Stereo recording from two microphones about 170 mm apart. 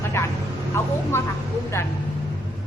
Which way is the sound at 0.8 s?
15° left (ahead or behind).